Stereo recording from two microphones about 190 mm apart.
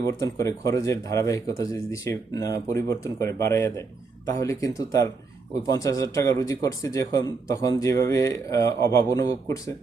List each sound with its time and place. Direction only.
0.1 s speech: 15° left (ahead or behind)